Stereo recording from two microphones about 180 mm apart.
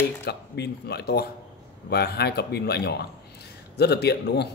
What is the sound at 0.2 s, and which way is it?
Speech, 65° left (ahead or behind).